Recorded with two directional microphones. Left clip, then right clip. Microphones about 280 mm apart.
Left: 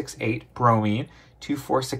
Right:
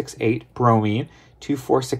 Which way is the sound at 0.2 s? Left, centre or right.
Right.